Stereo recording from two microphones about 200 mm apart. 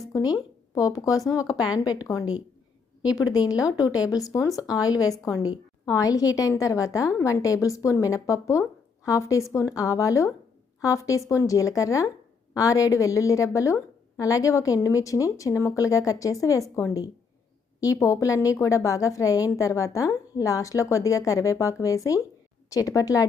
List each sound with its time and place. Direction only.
0.1 s a woman's voice: 20° left (ahead or behind)
3.0 s a woman's voice: 20° left (ahead or behind)